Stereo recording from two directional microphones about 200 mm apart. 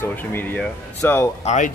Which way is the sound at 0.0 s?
10° left (ahead or behind).